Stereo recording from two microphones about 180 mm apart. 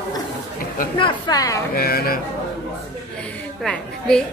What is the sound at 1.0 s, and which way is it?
Speech, 25° left (ahead or behind).